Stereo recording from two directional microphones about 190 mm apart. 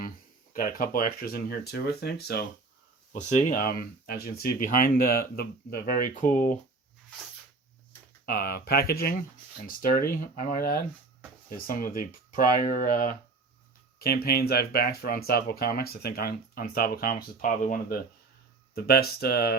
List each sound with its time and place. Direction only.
0.5 s speech: 50° left (ahead or behind)
3.1 s speech: 40° left (ahead or behind)
8.3 s speech: 50° left (ahead or behind)
14.0 s speech: 55° left (ahead or behind)